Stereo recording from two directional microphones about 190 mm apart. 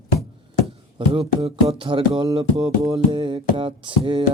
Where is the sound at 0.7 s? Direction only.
30° right (ahead or behind).